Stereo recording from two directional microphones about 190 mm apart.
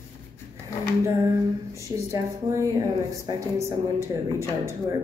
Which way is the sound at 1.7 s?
15° right (ahead or behind).